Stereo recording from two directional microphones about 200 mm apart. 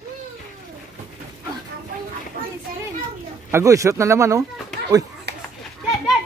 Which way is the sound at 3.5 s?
15° right (ahead or behind).